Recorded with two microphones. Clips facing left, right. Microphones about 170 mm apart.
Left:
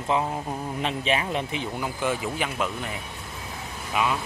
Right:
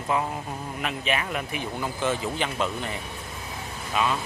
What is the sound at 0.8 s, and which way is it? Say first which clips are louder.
Speech: left 2 dB; 30° left (ahead or behind).